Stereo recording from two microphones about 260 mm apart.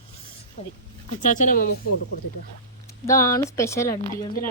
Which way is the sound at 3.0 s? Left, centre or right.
Centre.